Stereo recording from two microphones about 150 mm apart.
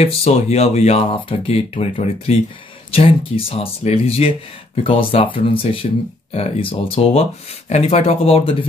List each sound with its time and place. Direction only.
0.0 s speech: 45° left (ahead or behind)